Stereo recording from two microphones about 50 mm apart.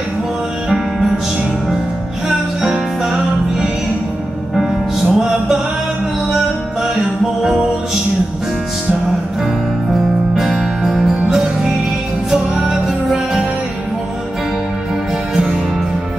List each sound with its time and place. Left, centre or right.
0.9 s music: centre
2.2 s music: centre
7.4 s music: centre
10.3 s music: centre
15.3 s music: centre